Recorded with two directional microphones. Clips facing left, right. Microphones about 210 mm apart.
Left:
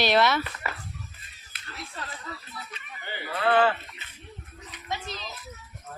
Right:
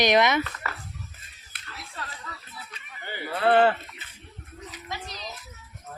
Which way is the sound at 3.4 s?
50° right (ahead or behind).